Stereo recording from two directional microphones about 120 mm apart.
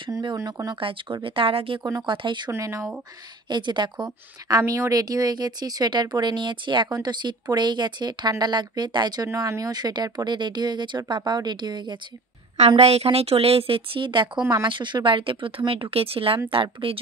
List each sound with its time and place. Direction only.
0.1 s a woman's voice: 35° right (ahead or behind)
0.7 s speech: 45° right (ahead or behind)
1.8 s speech: 25° right (ahead or behind)
2.0 s a woman's voice: 40° right (ahead or behind)
2.5 s speech: 25° right (ahead or behind)
3.4 s a woman's voice: 40° right (ahead or behind)
12.5 s a woman's voice: 60° right (ahead or behind)